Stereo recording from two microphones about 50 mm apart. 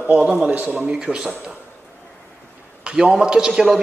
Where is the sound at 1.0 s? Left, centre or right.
Centre.